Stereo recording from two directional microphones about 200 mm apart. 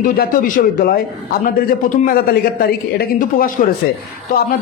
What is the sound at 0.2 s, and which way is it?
A man's voice, 45° left (ahead or behind).